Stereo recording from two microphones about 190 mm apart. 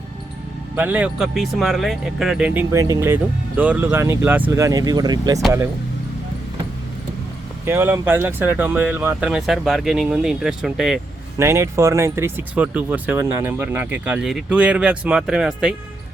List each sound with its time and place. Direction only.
0.8 s speech: 10° right (ahead or behind)
7.6 s speech: 10° right (ahead or behind)
11.3 s speech: 15° right (ahead or behind)